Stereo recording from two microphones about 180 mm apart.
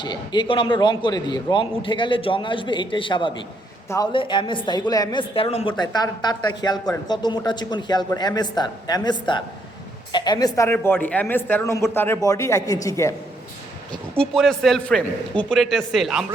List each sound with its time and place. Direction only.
0.0 s a man's voice: 25° left (ahead or behind)
14.2 s a man's voice: centre (ahead or behind)